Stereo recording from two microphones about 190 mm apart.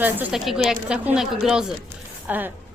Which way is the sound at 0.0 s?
5° right (ahead or behind).